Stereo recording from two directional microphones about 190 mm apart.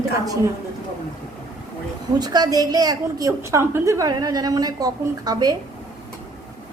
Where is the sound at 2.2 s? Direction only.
20° right (ahead or behind).